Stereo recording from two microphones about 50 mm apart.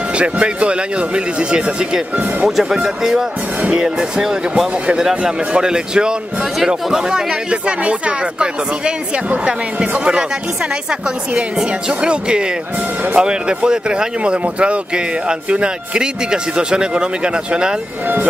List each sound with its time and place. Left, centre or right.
0.2 s speech: right
9.5 s speech: centre
11.5 s speech: centre